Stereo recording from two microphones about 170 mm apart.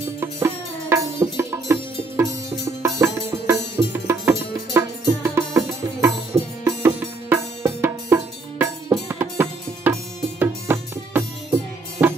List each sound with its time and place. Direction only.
0.2 s music: 15° right (ahead or behind)